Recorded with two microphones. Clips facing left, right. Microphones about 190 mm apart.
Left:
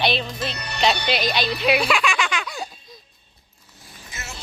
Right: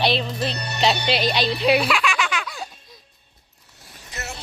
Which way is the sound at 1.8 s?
5° right (ahead or behind).